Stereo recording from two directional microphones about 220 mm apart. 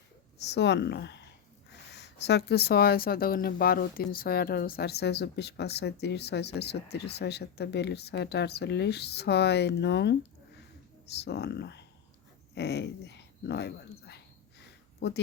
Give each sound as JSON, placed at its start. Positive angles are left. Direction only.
{"t": 0.5, "sound": "speech", "side_deg": 50}
{"t": 11.3, "sound": "speech", "side_deg": 50}
{"t": 14.6, "sound": "a sound", "side_deg": 50}